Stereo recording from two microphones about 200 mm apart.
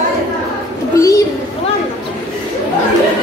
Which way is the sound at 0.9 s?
15° left (ahead or behind).